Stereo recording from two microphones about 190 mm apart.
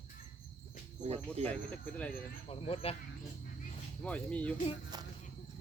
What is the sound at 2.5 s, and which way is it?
Speech, 30° left (ahead or behind).